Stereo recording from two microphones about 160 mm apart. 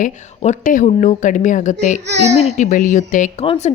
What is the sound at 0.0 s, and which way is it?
A woman's voice, 50° left (ahead or behind).